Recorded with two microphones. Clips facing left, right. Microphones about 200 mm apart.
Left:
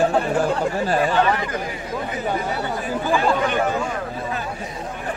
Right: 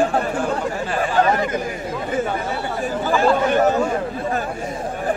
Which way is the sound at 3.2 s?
40° right (ahead or behind).